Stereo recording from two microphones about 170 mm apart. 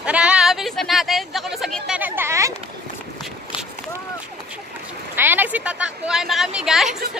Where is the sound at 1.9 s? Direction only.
10° right (ahead or behind).